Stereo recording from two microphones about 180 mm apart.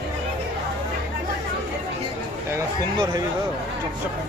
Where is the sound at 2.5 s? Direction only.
25° right (ahead or behind).